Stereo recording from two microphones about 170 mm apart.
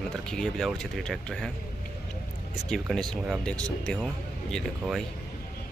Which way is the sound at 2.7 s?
5° left (ahead or behind).